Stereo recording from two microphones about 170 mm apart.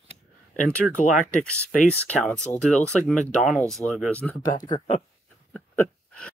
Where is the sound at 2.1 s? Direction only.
5° left (ahead or behind).